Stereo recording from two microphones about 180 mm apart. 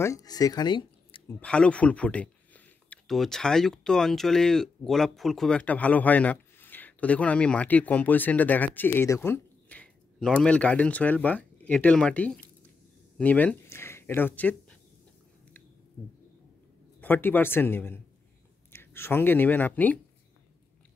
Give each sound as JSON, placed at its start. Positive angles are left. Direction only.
{"t": 0.0, "sound": "speech", "side_deg": 20}
{"t": 1.4, "sound": "speech", "side_deg": 5}
{"t": 17.0, "sound": "speech", "side_deg": 10}